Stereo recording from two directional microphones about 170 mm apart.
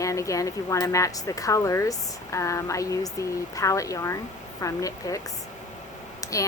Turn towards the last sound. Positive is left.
turn(degrees=20)  # may be behind; listen again after turning